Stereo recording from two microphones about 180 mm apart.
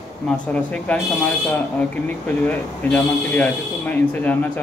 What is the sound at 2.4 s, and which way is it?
Speech, 10° left (ahead or behind).